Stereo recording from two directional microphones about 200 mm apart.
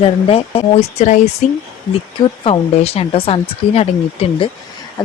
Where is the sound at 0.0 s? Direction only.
30° left (ahead or behind).